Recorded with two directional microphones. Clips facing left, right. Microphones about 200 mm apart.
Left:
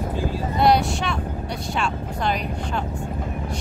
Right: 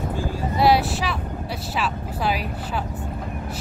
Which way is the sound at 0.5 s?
5° right (ahead or behind).